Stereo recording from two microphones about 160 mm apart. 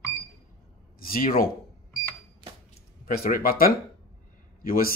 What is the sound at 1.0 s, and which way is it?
Speech, 65° left (ahead or behind).